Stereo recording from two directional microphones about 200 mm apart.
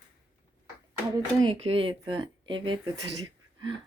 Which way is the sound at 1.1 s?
25° right (ahead or behind).